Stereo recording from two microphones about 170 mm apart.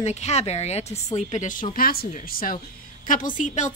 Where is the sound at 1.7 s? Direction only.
60° left (ahead or behind).